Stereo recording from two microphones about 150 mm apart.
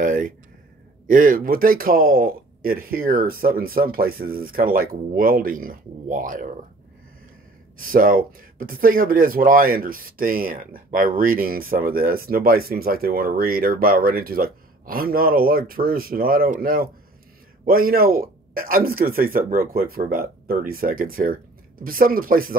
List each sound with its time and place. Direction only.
0.0 s a sound: 60° right (ahead or behind)
1.0 s speech: 65° right (ahead or behind)
7.8 s speech: 70° right (ahead or behind)